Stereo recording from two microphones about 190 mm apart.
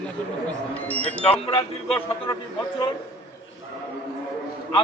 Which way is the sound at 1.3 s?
30° left (ahead or behind).